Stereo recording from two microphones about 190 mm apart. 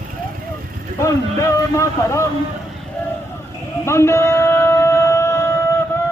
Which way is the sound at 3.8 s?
15° left (ahead or behind).